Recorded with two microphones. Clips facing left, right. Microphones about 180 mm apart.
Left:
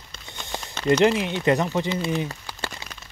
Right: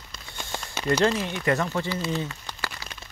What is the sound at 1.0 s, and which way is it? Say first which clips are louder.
Speech: left 3 dB; 15° left (ahead or behind).